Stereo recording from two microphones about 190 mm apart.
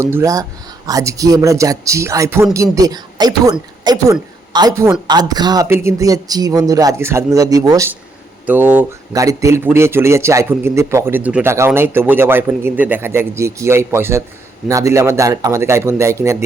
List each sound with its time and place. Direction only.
0.0 s a woman's voice: 15° right (ahead or behind)